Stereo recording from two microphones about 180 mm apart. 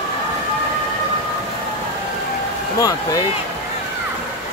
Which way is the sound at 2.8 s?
20° left (ahead or behind).